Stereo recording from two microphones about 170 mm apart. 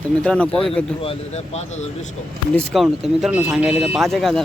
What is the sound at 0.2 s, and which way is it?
Speech, 5° left (ahead or behind).